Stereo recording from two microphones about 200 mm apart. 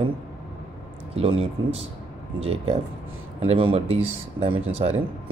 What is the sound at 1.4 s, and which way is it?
Speech, 30° right (ahead or behind).